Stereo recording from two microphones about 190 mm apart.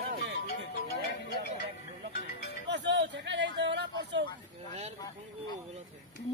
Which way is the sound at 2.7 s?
65° right (ahead or behind).